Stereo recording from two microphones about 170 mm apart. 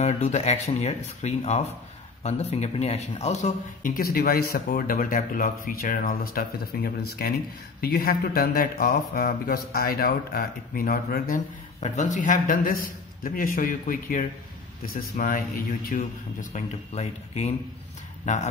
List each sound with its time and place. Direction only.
0.0 s speech: 40° left (ahead or behind)